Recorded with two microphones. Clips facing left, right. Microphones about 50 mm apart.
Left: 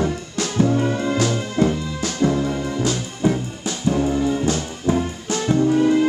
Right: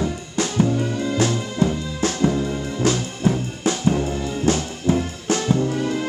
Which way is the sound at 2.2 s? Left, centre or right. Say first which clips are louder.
Left 4 dB; centre.